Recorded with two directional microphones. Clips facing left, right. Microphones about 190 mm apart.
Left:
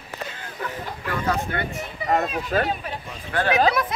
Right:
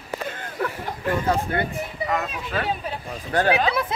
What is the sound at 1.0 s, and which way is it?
Speech, 30° right (ahead or behind).